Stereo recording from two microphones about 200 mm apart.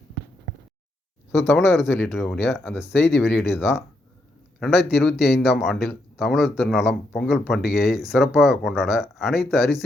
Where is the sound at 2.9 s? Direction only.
60° left (ahead or behind).